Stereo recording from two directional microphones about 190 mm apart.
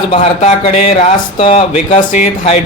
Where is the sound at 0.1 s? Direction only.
35° left (ahead or behind).